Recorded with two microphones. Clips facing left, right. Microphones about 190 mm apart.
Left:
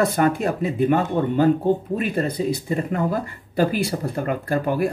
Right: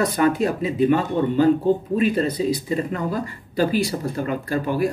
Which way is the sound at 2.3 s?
55° left (ahead or behind).